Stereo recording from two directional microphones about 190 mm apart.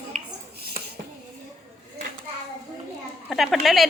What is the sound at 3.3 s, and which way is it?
Speech, centre (ahead or behind).